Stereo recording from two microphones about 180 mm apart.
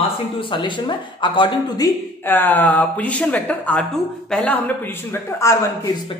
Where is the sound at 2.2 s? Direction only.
10° left (ahead or behind).